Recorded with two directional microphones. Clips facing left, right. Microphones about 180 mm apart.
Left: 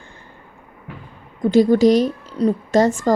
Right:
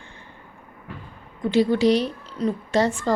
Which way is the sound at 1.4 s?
45° left (ahead or behind).